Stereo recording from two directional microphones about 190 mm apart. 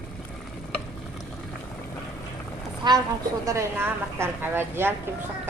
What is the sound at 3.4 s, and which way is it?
Speech, 15° right (ahead or behind).